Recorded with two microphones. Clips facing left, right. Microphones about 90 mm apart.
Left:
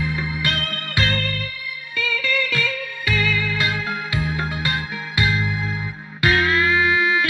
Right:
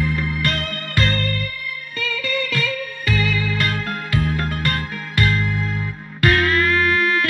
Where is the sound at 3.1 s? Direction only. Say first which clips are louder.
Even; 35° right (ahead or behind).